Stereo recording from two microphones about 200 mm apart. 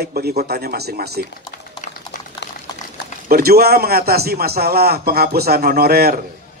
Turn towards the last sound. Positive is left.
turn(degrees=-50)  # may be behind; listen again after turning